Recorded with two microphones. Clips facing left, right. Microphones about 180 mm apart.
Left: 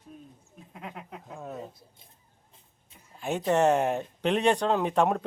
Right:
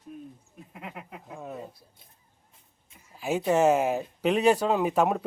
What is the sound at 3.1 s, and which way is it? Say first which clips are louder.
Speech: right 1 dB; 5° right (ahead or behind).